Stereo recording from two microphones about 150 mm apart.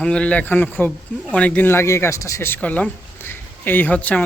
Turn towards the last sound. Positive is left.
turn(degrees=10)  # may be behind; listen again after turning